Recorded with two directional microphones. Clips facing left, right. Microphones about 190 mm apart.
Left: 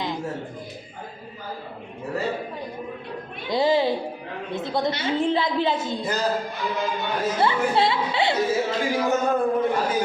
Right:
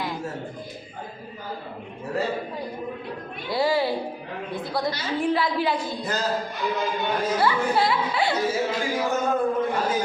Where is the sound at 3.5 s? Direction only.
20° left (ahead or behind).